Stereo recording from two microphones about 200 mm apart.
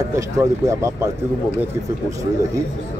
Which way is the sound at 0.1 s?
15° right (ahead or behind).